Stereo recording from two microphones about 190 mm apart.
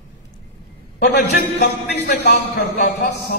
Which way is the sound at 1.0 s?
55° left (ahead or behind).